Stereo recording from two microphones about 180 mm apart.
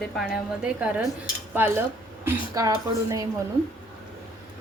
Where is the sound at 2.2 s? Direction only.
20° right (ahead or behind).